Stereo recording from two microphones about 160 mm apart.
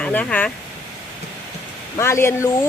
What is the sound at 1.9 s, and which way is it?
Speech, 15° left (ahead or behind).